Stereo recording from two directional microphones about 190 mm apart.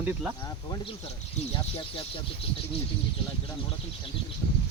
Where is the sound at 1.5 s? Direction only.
25° left (ahead or behind).